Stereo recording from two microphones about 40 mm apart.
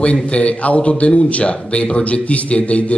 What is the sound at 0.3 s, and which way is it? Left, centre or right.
Speech, left.